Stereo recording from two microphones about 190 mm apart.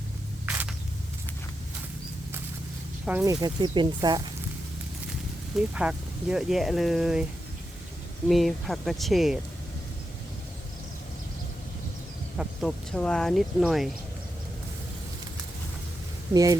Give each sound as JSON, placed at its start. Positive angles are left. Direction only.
{"t": 0.4, "sound": "a sound", "side_deg": -10}
{"t": 3.2, "sound": "speech", "side_deg": -20}
{"t": 5.7, "sound": "speech", "side_deg": -5}
{"t": 8.3, "sound": "speech", "side_deg": 0}
{"t": 12.4, "sound": "speech", "side_deg": 5}
{"t": 16.3, "sound": "speech", "side_deg": -20}